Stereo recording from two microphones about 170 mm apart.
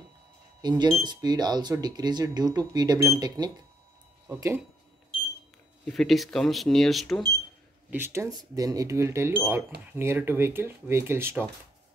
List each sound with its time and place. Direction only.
0.6 s speech: 25° right (ahead or behind)
5.9 s speech: centre (ahead or behind)
7.9 s speech: 15° right (ahead or behind)